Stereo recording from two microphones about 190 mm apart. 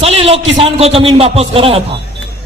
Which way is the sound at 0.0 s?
30° right (ahead or behind).